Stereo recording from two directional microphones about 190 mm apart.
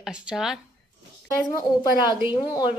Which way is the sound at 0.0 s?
5° right (ahead or behind).